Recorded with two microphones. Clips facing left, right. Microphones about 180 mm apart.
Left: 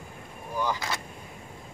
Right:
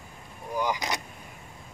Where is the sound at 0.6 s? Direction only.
15° right (ahead or behind).